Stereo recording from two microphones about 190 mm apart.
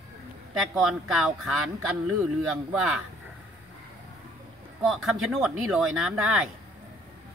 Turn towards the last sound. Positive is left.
turn(degrees=-5)  # may be behind; listen again after turning